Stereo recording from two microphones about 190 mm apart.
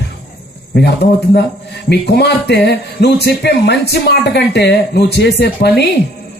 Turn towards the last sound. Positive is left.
turn(degrees=60)  # may be behind; listen again after turning